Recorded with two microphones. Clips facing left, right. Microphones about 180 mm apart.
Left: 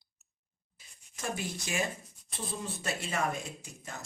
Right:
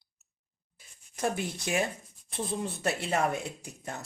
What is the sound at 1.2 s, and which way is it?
Speech, 60° right (ahead or behind).